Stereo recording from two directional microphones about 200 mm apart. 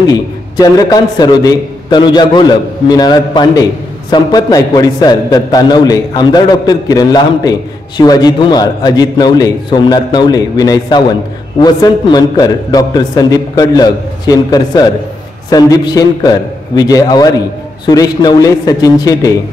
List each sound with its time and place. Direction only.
0.1 s a man's voice: 20° left (ahead or behind)